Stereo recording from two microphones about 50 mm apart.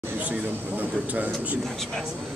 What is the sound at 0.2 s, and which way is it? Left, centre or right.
Speech, right.